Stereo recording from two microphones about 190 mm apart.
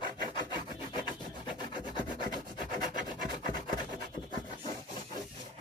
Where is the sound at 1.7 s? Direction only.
25° left (ahead or behind).